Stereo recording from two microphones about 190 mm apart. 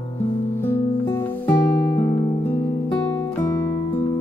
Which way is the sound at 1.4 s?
10° left (ahead or behind).